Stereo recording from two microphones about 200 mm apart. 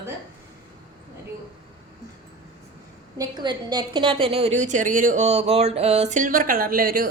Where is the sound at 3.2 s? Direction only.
20° right (ahead or behind).